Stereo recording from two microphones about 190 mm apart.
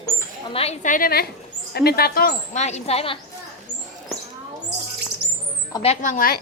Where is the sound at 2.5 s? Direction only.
35° left (ahead or behind).